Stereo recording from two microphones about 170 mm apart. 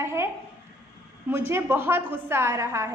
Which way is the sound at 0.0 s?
15° right (ahead or behind).